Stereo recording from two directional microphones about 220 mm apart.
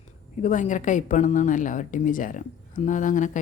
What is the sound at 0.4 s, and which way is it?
A woman's voice, 35° left (ahead or behind).